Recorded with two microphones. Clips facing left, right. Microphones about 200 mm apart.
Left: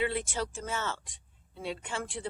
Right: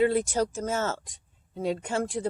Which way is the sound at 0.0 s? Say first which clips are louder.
Right 8 dB; 40° right (ahead or behind).